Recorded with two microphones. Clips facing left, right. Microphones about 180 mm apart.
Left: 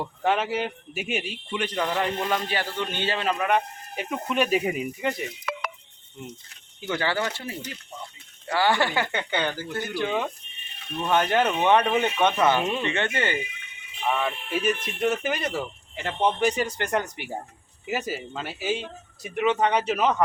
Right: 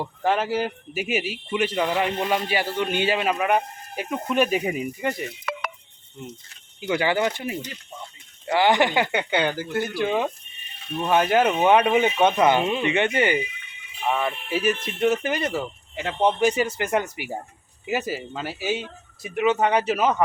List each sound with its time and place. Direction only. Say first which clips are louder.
0.0 s speech: right 1 dB; centre (ahead or behind)
6.8 s speech: right 4 dB; 15° right (ahead or behind)
11.0 s speech: right 3 dB; 10° right (ahead or behind)
14.1 s speech: right 2 dB; 5° right (ahead or behind)